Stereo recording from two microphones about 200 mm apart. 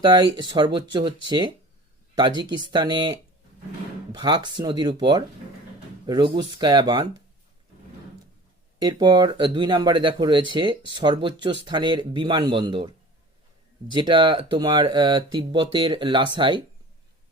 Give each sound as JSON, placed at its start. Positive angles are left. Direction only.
{"t": 0.0, "sound": "speech", "side_deg": -20}
{"t": 8.8, "sound": "speech", "side_deg": -20}
{"t": 13.9, "sound": "speech", "side_deg": -25}